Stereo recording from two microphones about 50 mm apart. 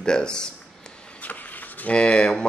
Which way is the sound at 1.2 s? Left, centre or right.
Left.